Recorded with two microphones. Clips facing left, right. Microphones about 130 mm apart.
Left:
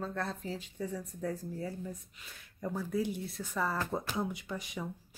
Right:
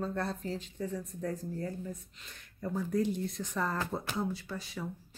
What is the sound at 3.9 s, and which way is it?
Speech, 15° left (ahead or behind).